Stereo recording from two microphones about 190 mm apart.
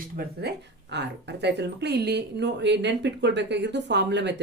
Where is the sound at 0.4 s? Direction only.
65° right (ahead or behind).